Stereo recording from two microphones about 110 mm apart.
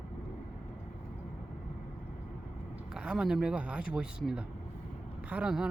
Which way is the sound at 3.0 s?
5° right (ahead or behind).